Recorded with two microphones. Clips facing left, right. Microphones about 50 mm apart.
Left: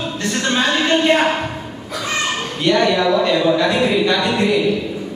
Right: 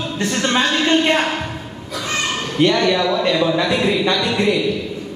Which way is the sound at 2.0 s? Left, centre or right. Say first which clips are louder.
Left 1 dB; centre.